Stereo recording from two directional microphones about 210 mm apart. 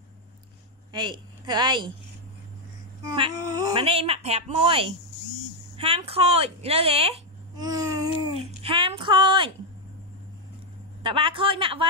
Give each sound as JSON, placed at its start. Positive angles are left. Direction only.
{"t": 0.9, "sound": "a woman's voice", "side_deg": -20}
{"t": 3.2, "sound": "speech", "side_deg": -20}
{"t": 8.4, "sound": "a sound", "side_deg": -25}
{"t": 11.0, "sound": "speech", "side_deg": -25}